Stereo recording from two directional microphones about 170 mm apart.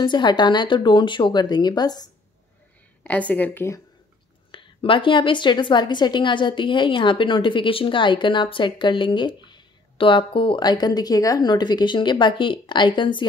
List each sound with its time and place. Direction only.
0.0 s a woman's voice: 25° left (ahead or behind)
3.0 s speech: 10° left (ahead or behind)
4.5 s a woman's voice: 30° left (ahead or behind)